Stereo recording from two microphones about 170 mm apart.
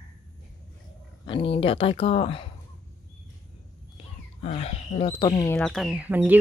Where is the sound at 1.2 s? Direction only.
30° left (ahead or behind).